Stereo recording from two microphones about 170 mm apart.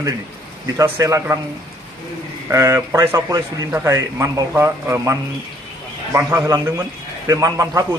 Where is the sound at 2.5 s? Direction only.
15° right (ahead or behind).